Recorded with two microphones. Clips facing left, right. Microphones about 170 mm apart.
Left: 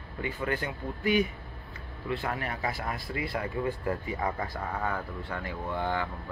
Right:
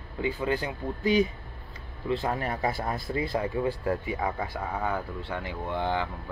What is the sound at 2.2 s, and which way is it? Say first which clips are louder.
Speech: right 4 dB; 30° right (ahead or behind).